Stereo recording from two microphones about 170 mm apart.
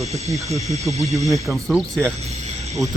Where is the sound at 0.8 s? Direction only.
Centre (ahead or behind).